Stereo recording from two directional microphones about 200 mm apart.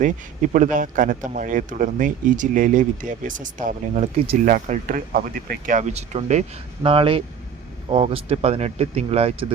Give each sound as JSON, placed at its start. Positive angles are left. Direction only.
{"t": 0.0, "sound": "speech", "side_deg": -40}